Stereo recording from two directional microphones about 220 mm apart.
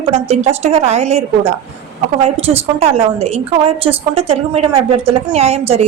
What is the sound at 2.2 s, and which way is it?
A woman's voice, 25° right (ahead or behind).